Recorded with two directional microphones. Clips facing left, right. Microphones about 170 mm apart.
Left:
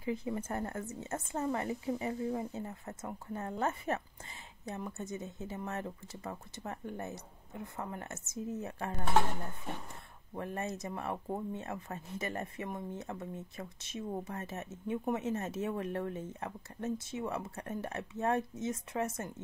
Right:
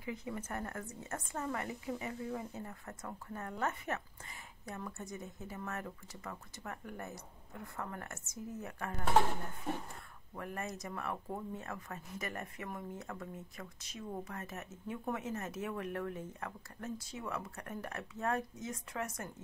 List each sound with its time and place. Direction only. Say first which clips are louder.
0.0 s speech: left 6 dB; 30° left (ahead or behind)
10.3 s speech: left 4 dB; 25° left (ahead or behind)